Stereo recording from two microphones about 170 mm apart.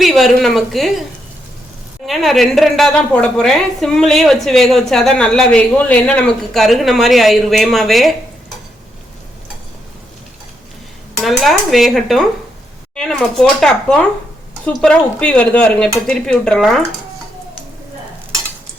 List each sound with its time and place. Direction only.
0.0 s a woman's voice: centre (ahead or behind)
2.0 s a woman's voice: centre (ahead or behind)
11.2 s a woman's voice: centre (ahead or behind)